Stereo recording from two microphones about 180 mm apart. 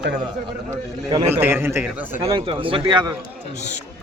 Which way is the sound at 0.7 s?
20° right (ahead or behind).